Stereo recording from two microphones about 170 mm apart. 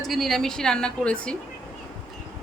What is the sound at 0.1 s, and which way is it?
A woman's voice, centre (ahead or behind).